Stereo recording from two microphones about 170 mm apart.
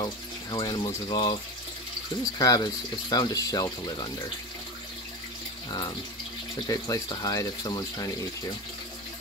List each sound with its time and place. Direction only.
0.0 s speech: 25° left (ahead or behind)
2.3 s speech: 20° left (ahead or behind)
5.7 s speech: 25° left (ahead or behind)